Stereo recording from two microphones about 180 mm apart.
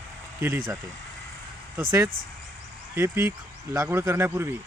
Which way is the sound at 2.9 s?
15° right (ahead or behind).